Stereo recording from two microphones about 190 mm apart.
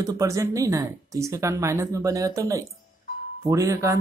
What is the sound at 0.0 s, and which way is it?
Speech, 20° right (ahead or behind).